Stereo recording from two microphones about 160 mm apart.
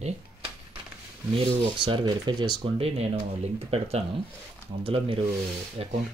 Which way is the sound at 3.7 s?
40° right (ahead or behind).